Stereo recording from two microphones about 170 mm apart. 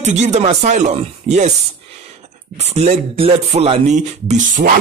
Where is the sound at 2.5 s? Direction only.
40° right (ahead or behind).